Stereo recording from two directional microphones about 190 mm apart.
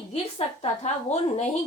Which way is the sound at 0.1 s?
35° left (ahead or behind).